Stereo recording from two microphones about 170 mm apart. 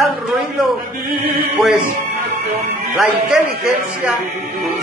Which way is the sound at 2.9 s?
5° right (ahead or behind).